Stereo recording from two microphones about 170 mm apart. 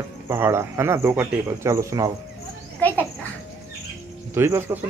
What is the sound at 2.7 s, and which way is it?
Insect, 10° left (ahead or behind).